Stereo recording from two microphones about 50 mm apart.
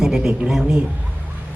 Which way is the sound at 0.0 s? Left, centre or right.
Centre.